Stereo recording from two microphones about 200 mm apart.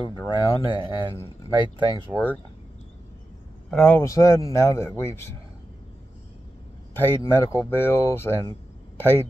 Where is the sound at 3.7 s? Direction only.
5° left (ahead or behind).